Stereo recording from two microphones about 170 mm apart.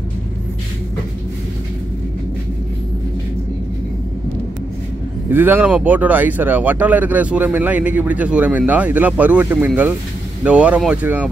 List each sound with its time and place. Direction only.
5.3 s speech: 10° right (ahead or behind)